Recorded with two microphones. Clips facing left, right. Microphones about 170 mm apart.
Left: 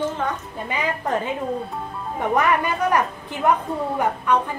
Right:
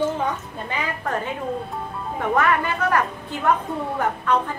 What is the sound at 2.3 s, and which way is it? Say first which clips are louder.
A woman's voice: left 1 dB; 15° left (ahead or behind).